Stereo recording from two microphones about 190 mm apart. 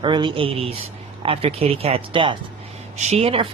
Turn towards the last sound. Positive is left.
turn(degrees=-30)  # may be behind; listen again after turning